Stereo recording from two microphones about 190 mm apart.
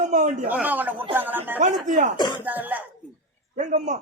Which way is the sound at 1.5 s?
40° right (ahead or behind).